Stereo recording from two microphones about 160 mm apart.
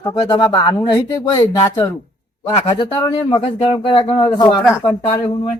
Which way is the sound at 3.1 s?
30° left (ahead or behind).